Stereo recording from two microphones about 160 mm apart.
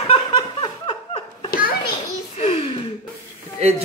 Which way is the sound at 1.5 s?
60° left (ahead or behind).